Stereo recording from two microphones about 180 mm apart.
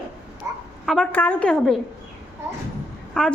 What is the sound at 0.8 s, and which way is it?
Speech, centre (ahead or behind).